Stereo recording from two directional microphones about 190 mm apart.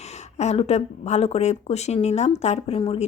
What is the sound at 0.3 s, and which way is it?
Speech, 35° left (ahead or behind).